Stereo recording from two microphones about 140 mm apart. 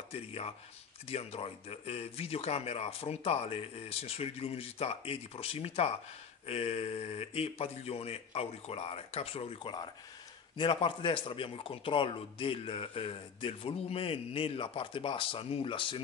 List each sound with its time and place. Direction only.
0.1 s a man's voice: 45° left (ahead or behind)